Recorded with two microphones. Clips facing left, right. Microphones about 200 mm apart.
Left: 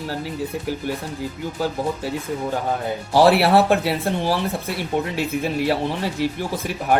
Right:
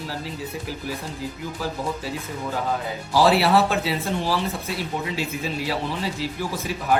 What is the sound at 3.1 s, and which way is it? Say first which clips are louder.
Speech: left 3 dB; 60° left (ahead or behind).